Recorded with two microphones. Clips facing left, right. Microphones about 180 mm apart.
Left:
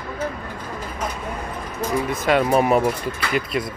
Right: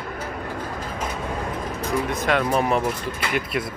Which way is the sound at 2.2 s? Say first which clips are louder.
Left 5 dB; 5° left (ahead or behind).